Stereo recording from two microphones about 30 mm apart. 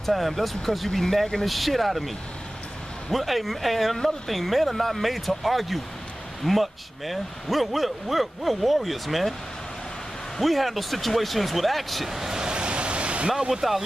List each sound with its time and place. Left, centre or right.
0.0 s speech: centre
1.4 s speech: centre
10.4 s speech: centre
12.1 s vehicle: centre
12.4 s a sound: right
13.5 s speech: centre